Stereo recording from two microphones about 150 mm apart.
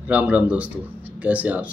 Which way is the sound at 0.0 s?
10° right (ahead or behind).